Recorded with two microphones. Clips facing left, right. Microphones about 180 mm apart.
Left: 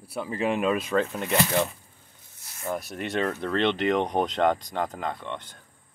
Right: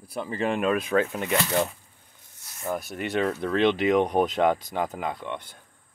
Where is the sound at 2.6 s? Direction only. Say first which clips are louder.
Right 1 dB; centre (ahead or behind).